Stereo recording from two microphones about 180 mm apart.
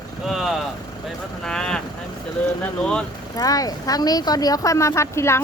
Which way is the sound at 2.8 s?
5° left (ahead or behind).